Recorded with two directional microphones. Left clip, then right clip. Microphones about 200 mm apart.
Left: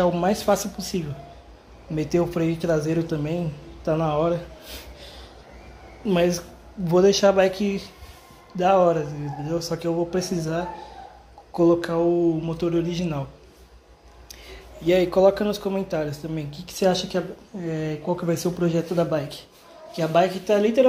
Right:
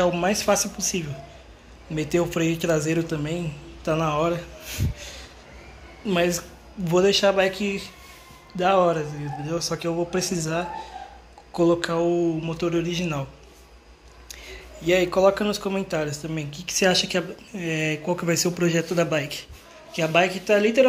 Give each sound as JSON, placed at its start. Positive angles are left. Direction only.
{"t": 0.0, "sound": "speech", "side_deg": 15}
{"t": 4.9, "sound": "a sound", "side_deg": 10}
{"t": 6.0, "sound": "speech", "side_deg": 15}
{"t": 8.5, "sound": "speech", "side_deg": 10}
{"t": 14.3, "sound": "speech", "side_deg": 15}